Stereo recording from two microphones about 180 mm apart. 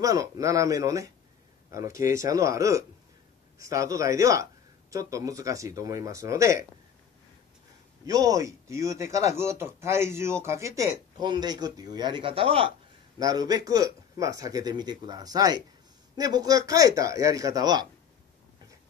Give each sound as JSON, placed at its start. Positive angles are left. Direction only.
{"t": 0.0, "sound": "speech", "side_deg": -20}
{"t": 8.0, "sound": "speech", "side_deg": -20}